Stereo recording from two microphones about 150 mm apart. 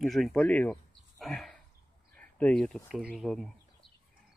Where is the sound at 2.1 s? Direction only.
10° left (ahead or behind).